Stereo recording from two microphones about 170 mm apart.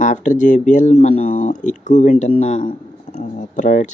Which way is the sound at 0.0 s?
45° left (ahead or behind).